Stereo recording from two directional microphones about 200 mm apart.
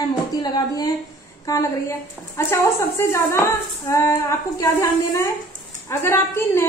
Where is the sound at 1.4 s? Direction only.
15° left (ahead or behind).